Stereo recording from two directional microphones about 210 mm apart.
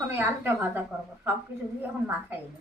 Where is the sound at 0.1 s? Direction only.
10° right (ahead or behind).